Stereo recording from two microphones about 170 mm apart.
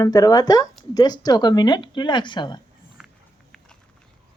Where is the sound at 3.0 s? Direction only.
5° right (ahead or behind).